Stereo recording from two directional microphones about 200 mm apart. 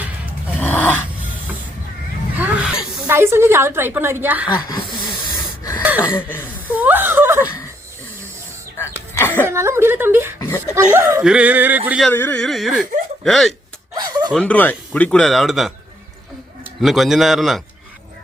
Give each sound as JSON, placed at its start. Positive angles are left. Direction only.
{"t": 0.6, "sound": "a sound", "side_deg": 10}
{"t": 2.3, "sound": "a sound", "side_deg": -5}
{"t": 3.1, "sound": "a woman's voice", "side_deg": -10}
{"t": 6.0, "sound": "speech", "side_deg": 10}
{"t": 6.4, "sound": "gasp", "side_deg": -10}
{"t": 9.1, "sound": "a sound", "side_deg": 10}
{"t": 9.5, "sound": "a woman's voice", "side_deg": -15}
{"t": 10.4, "sound": "speech", "side_deg": 15}
{"t": 10.9, "sound": "a woman's voice", "side_deg": -10}
{"t": 12.1, "sound": "speech", "side_deg": 10}
{"t": 13.9, "sound": "a sound", "side_deg": -20}
{"t": 14.3, "sound": "speech", "side_deg": 5}
{"t": 16.8, "sound": "speech", "side_deg": 0}